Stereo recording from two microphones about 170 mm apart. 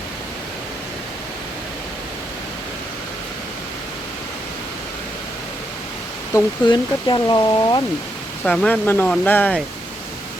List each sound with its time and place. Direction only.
6.3 s speech: 25° left (ahead or behind)
8.4 s speech: 10° left (ahead or behind)